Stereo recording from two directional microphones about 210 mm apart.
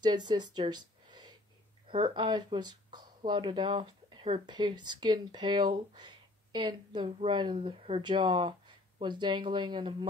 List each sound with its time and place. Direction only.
0.0 s speech: 20° right (ahead or behind)